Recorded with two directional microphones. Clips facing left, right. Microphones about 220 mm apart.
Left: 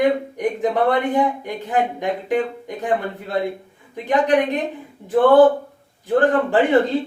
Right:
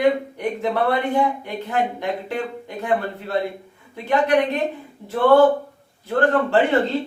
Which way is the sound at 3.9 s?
15° left (ahead or behind).